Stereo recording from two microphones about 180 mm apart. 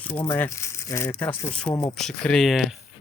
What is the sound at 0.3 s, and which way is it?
Speech, 10° left (ahead or behind).